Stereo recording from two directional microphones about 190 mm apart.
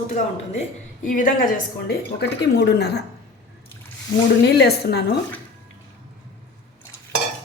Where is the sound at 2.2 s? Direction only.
65° left (ahead or behind).